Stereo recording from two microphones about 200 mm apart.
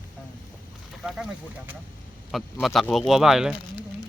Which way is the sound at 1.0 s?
Centre (ahead or behind).